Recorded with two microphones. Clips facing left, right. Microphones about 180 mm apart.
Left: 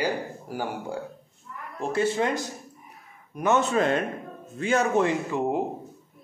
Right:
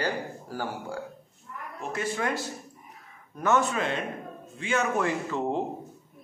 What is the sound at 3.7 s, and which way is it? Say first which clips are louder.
A man's voice: left 6 dB; 40° left (ahead or behind).